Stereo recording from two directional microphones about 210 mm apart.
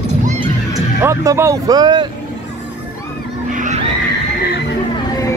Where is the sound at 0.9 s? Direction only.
10° right (ahead or behind).